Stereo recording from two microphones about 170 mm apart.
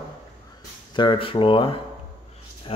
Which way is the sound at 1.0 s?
30° left (ahead or behind).